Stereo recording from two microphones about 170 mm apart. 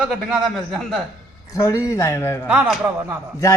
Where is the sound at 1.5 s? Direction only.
15° left (ahead or behind).